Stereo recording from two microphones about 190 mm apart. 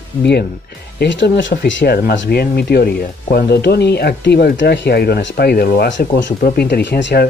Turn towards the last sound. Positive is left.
turn(degrees=55)  # may be behind; listen again after turning